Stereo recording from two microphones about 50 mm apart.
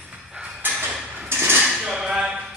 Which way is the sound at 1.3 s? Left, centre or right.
Right.